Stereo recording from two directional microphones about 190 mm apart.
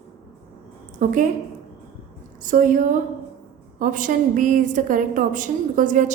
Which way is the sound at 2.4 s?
45° right (ahead or behind).